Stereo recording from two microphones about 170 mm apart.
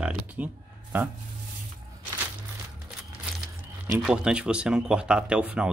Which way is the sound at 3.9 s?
5° right (ahead or behind).